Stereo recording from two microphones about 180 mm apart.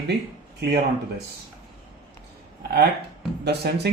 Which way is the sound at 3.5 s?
65° right (ahead or behind).